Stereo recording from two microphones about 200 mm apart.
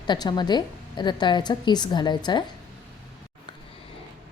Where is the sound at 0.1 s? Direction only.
20° left (ahead or behind).